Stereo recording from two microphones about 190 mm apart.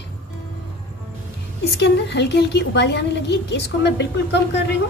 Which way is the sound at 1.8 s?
65° left (ahead or behind).